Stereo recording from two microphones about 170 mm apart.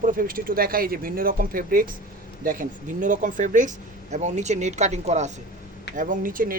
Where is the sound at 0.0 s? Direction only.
55° right (ahead or behind).